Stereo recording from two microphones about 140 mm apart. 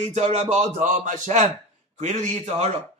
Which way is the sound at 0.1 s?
50° right (ahead or behind).